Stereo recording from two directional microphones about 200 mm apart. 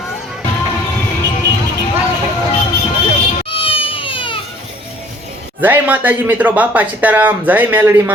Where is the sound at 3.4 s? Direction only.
25° left (ahead or behind).